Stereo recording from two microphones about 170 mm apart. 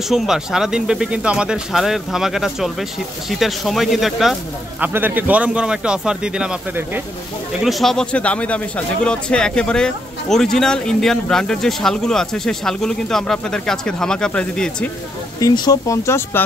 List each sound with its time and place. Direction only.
0.1 s speech: 5° right (ahead or behind)
15.4 s speech: 20° left (ahead or behind)